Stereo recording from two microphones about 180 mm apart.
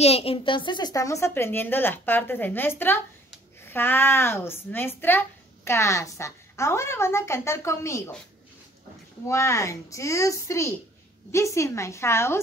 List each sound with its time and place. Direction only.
0.0 s a child's voice: 35° left (ahead or behind); by 8.0 s 15° left (ahead or behind)
9.2 s a child's voice: 15° left (ahead or behind)